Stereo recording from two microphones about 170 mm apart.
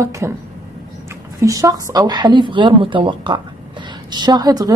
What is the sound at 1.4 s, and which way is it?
A woman's voice, 20° right (ahead or behind).